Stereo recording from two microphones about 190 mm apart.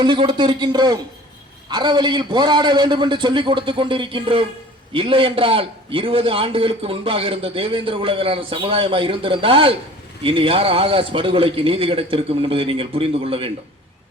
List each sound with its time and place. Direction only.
0.0 s a man's voice: 25° right (ahead or behind)